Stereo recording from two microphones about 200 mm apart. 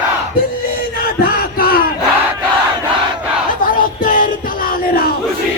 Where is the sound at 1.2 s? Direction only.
50° left (ahead or behind).